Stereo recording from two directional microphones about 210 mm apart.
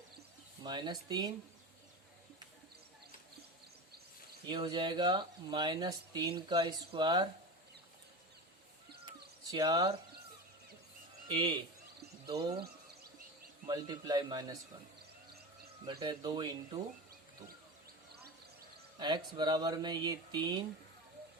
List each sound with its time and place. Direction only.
0.6 s speech: 20° right (ahead or behind)
4.4 s speech: 20° right (ahead or behind)
9.5 s speech: 15° right (ahead or behind)
11.3 s speech: 20° right (ahead or behind)
13.7 s speech: 20° right (ahead or behind)
15.9 s speech: 20° right (ahead or behind)
18.9 s speech: 20° right (ahead or behind)